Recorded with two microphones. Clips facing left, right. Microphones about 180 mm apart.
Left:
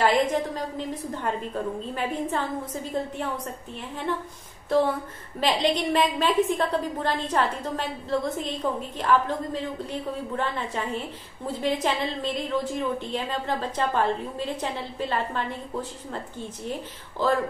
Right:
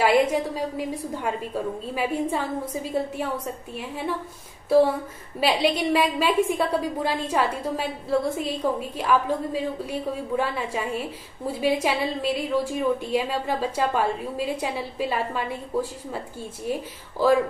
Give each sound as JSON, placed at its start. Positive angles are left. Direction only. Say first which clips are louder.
{"t": 0.0, "sound": "a woman's voice", "louder": "right 2 dB", "side_deg": -10}
{"t": 5.4, "sound": "a woman's voice", "louder": "right 2 dB", "side_deg": -10}